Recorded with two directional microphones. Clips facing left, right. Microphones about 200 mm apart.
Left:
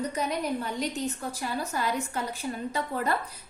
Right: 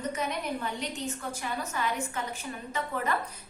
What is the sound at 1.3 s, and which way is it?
Speech, 35° left (ahead or behind).